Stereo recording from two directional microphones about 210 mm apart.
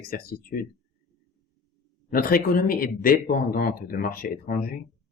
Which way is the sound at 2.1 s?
45° left (ahead or behind).